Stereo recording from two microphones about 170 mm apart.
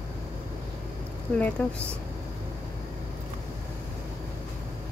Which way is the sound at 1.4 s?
10° left (ahead or behind).